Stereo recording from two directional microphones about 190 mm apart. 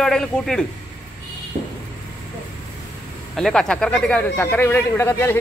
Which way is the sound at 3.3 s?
Centre (ahead or behind).